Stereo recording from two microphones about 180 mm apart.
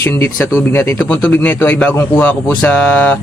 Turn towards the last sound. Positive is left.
turn(degrees=10)  # may be behind; listen again after turning